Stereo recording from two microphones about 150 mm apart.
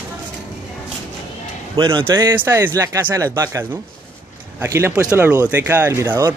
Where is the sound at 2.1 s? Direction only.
15° right (ahead or behind).